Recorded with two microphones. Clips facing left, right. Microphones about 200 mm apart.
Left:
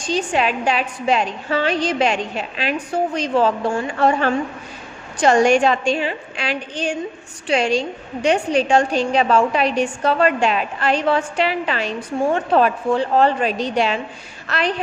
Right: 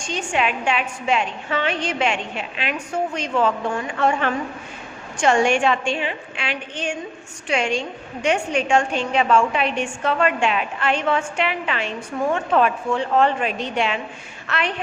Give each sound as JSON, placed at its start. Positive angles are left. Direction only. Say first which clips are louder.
{"t": 0.0, "sound": "a woman's voice", "louder": "left 4 dB", "side_deg": 35}